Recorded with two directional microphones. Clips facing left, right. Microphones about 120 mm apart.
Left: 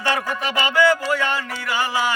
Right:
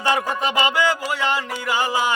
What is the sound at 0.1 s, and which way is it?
Music, 20° right (ahead or behind).